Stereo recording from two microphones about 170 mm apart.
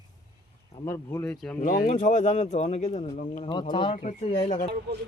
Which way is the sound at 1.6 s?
50° left (ahead or behind).